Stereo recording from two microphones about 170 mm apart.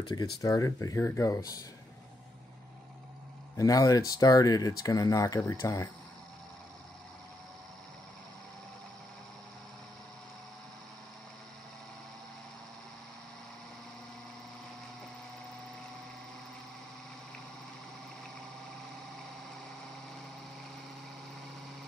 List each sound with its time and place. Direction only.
0.4 s speech: 20° left (ahead or behind)
3.5 s speech: 20° left (ahead or behind)